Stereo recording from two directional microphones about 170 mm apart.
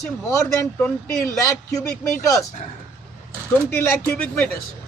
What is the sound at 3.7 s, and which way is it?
Speech, 15° left (ahead or behind).